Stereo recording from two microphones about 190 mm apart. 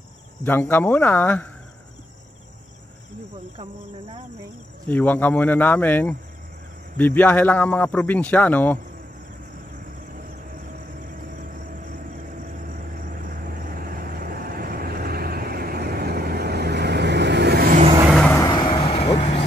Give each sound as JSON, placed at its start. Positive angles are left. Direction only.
{"t": 0.4, "sound": "speech", "side_deg": 10}
{"t": 4.8, "sound": "speech", "side_deg": 10}
{"t": 12.5, "sound": "vehicle", "side_deg": -45}
{"t": 18.3, "sound": "vehicle", "side_deg": 20}